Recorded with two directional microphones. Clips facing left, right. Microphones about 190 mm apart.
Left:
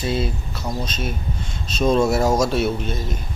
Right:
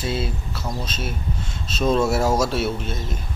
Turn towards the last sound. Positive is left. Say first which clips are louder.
# left 3 dB
turn(degrees=-5)  # may be behind; listen again after turning